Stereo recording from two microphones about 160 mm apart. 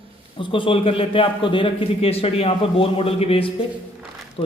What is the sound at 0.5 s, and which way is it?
A man's voice, 35° left (ahead or behind).